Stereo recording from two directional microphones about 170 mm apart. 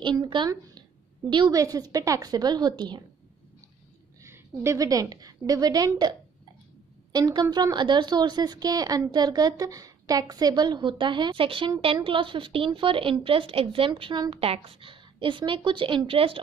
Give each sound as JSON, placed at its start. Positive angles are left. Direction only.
{"t": 0.0, "sound": "speech", "side_deg": -30}
{"t": 4.2, "sound": "a woman's voice", "side_deg": -15}